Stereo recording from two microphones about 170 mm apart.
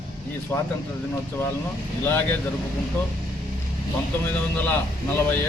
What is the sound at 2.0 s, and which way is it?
Speech, 10° left (ahead or behind).